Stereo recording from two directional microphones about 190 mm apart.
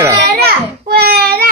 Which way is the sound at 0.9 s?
55° right (ahead or behind).